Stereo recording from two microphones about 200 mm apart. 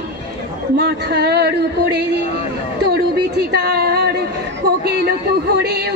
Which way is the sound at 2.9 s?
50° right (ahead or behind).